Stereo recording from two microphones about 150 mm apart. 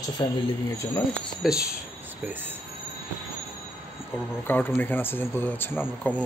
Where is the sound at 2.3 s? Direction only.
15° right (ahead or behind).